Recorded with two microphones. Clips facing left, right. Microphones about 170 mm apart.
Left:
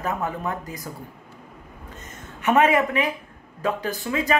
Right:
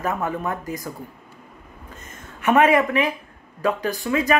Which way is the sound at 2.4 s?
20° left (ahead or behind).